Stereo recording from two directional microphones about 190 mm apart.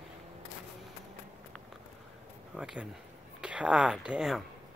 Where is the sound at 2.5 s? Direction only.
5° right (ahead or behind).